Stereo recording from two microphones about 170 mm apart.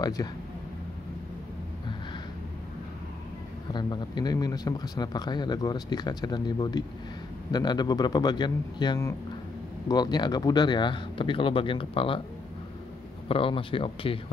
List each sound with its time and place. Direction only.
0.0 s speech: 25° left (ahead or behind)
3.7 s speech: 25° left (ahead or behind)
13.3 s speech: 30° left (ahead or behind)